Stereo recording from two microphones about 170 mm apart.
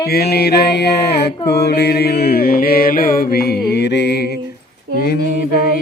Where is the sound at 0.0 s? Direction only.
65° left (ahead or behind).